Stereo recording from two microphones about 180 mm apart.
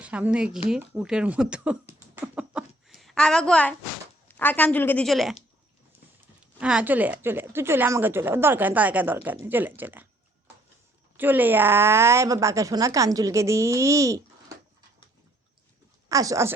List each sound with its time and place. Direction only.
0.0 s speech: 5° right (ahead or behind)
2.2 s a sound: 5° right (ahead or behind)
4.3 s a woman's voice: 10° left (ahead or behind)
5.0 s speech: centre (ahead or behind)
6.6 s a woman's voice: 5° right (ahead or behind)
11.2 s a woman's voice: 10° right (ahead or behind)
16.0 s a woman's voice: 20° right (ahead or behind)